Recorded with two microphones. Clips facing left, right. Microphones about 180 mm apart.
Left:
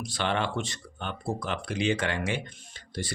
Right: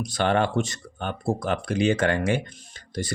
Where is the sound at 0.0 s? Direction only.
45° right (ahead or behind).